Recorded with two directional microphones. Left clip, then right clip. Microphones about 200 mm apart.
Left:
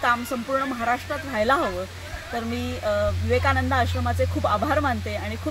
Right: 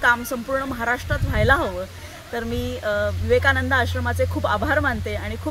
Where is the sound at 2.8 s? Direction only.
20° right (ahead or behind).